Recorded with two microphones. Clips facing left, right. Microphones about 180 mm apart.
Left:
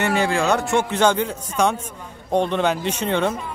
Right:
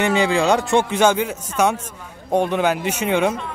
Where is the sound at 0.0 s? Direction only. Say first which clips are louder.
Right 2 dB; 20° right (ahead or behind).